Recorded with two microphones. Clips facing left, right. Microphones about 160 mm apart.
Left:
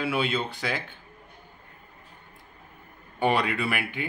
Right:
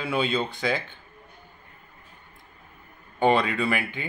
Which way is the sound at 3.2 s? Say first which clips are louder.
Right 3 dB; 10° left (ahead or behind).